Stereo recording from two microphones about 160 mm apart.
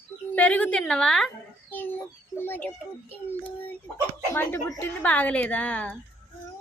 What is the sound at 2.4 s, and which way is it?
Speech, 10° left (ahead or behind).